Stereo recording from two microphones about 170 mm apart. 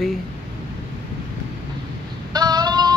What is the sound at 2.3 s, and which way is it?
Female singing, 25° right (ahead or behind).